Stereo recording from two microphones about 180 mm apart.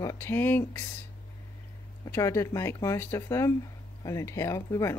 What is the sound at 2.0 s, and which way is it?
Speech, 15° left (ahead or behind).